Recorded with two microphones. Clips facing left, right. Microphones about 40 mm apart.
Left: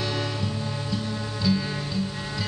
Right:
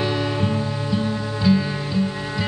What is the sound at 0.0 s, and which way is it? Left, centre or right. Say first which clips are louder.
Music: right 6 dB; centre.